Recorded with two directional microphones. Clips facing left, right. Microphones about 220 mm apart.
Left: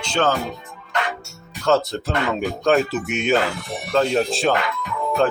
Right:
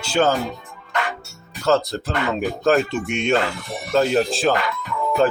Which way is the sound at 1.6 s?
Centre (ahead or behind).